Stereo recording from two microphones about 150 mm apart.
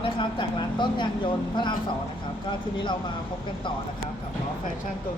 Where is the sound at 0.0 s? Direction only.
30° left (ahead or behind).